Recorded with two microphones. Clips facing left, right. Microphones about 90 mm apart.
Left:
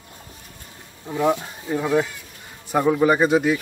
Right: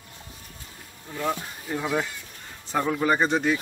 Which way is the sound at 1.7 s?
5° left (ahead or behind).